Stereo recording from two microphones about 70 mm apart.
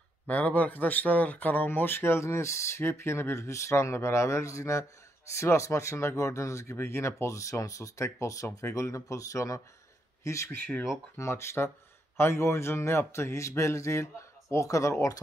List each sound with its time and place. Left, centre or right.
0.3 s speech: left